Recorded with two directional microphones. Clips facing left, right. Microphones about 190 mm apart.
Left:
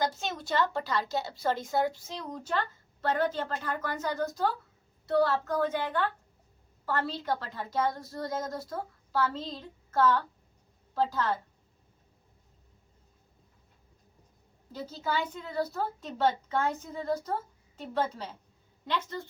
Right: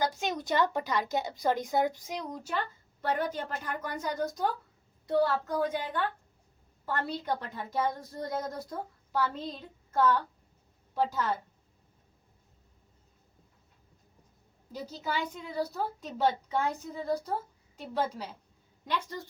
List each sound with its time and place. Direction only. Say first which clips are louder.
0.0 s a woman's voice: right 1 dB; 15° right (ahead or behind)
14.7 s a woman's voice: left 2 dB; 15° right (ahead or behind)